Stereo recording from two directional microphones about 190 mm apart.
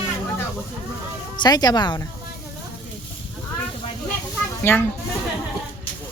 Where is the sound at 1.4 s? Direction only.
20° left (ahead or behind).